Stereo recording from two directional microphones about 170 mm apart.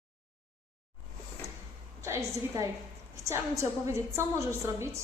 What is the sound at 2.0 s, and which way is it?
A woman's voice, 15° right (ahead or behind).